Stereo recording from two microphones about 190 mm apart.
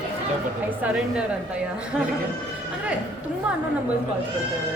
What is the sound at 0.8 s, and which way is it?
A woman's voice, 10° right (ahead or behind).